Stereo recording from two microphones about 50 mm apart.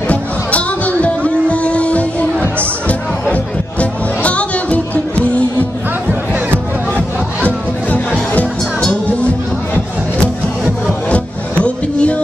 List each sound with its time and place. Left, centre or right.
0.1 s music: left
10.9 s music: left